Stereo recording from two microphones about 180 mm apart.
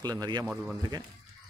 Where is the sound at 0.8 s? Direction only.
20° right (ahead or behind).